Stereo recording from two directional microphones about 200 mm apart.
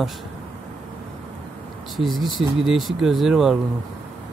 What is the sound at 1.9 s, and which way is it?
Speech, centre (ahead or behind).